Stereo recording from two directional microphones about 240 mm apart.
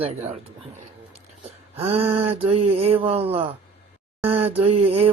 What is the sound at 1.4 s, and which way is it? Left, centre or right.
Speech, right.